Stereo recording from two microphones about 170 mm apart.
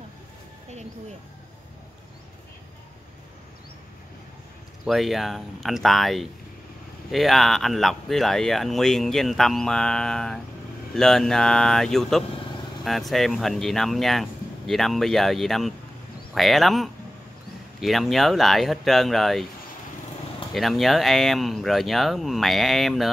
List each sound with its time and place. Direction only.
4.8 s speech: centre (ahead or behind)
20.5 s speech: centre (ahead or behind)